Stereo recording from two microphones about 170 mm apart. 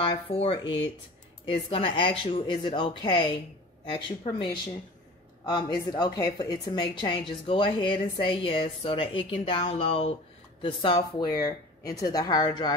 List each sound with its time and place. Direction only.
0.0 s a woman's voice: 35° left (ahead or behind)
5.4 s a woman's voice: 25° left (ahead or behind)